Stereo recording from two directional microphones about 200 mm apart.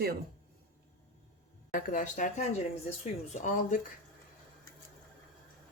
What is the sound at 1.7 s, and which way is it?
Speech, 40° left (ahead or behind).